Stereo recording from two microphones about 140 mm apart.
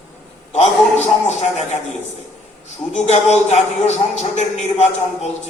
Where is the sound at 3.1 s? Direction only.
55° left (ahead or behind).